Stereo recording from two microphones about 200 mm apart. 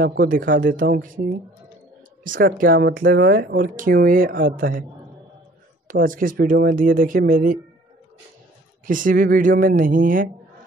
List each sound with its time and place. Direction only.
0.0 s speech: 45° right (ahead or behind)
5.9 s speech: 45° right (ahead or behind)
8.8 s speech: 45° right (ahead or behind)